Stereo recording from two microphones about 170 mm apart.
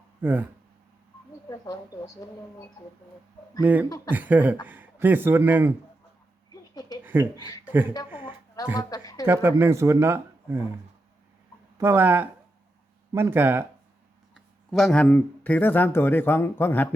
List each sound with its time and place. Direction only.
0.2 s speech: 10° right (ahead or behind)
1.5 s a woman's voice: 20° left (ahead or behind)
3.6 s speech: 10° right (ahead or behind)
3.8 s a woman's voice: 20° left (ahead or behind)
4.1 s speech: 10° right (ahead or behind)
6.7 s a sound: 20° left (ahead or behind)
7.0 s a sound: 10° right (ahead or behind)
7.3 s a woman's voice: 25° left (ahead or behind)
7.6 s speech: 10° right (ahead or behind)
8.2 s music: 25° left (ahead or behind)
8.8 s a woman's voice: 20° left (ahead or behind)
9.2 s speech: 15° right (ahead or behind)
11.8 s speech: 15° right (ahead or behind)
14.3 s speech: centre (ahead or behind)